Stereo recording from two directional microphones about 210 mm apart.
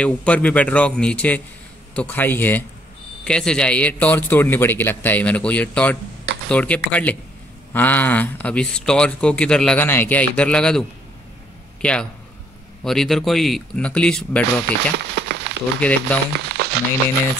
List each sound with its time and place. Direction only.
0.0 s a man's voice: 5° left (ahead or behind)
15.0 s a sound: 55° right (ahead or behind)
15.8 s a man's voice: 5° left (ahead or behind)
16.3 s crumpling: 50° right (ahead or behind)